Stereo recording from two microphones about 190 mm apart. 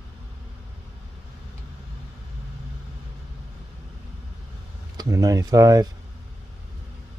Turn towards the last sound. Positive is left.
turn(degrees=-15)  # may be behind; listen again after turning